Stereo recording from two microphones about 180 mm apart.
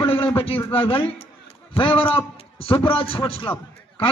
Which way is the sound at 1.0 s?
30° left (ahead or behind).